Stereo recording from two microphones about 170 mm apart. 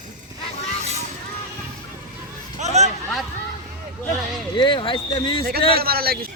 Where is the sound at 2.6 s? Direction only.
40° right (ahead or behind).